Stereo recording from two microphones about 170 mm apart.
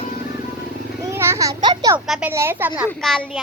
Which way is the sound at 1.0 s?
15° right (ahead or behind).